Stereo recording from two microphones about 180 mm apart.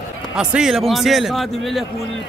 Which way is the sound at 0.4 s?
5° right (ahead or behind).